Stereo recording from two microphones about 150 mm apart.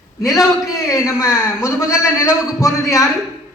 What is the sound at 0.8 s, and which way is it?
A man's voice, 20° left (ahead or behind).